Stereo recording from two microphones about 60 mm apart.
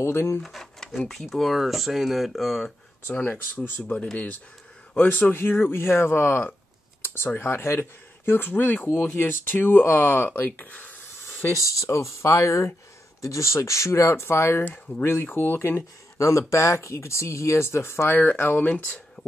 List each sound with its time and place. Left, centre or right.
0.0 s speech: left
0.4 s speech: centre
3.2 s speech: left
4.9 s speech: left
11.1 s a sound: left
11.6 s speech: left
14.6 s speech: left
15.3 s speech: left
16.2 s speech: left